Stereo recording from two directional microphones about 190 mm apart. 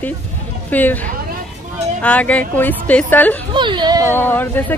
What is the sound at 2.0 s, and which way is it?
Speech, 5° left (ahead or behind).